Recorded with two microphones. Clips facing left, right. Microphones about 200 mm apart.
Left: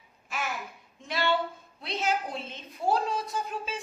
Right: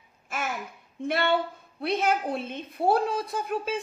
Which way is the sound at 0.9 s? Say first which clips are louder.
Right 3 dB; 55° right (ahead or behind).